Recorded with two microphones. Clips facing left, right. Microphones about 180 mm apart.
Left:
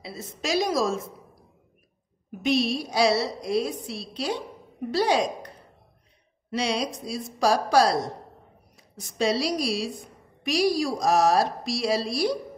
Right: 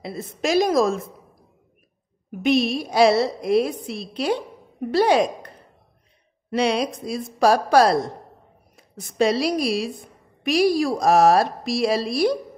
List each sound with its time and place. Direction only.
0.0 s a woman's voice: 55° right (ahead or behind)
2.4 s a woman's voice: 55° right (ahead or behind)
6.5 s a woman's voice: 55° right (ahead or behind)